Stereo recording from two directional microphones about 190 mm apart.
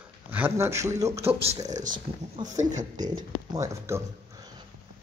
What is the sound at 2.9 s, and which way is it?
Speech, 20° right (ahead or behind).